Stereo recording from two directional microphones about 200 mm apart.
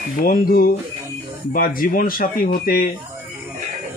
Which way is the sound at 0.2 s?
45° left (ahead or behind).